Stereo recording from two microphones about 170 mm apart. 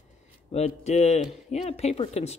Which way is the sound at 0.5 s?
35° left (ahead or behind).